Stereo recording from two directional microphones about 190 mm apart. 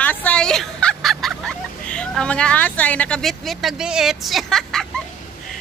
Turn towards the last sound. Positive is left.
turn(degrees=0)  # may be behind; listen again after turning